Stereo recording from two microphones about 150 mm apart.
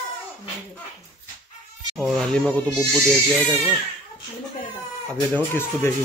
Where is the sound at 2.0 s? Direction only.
Centre (ahead or behind).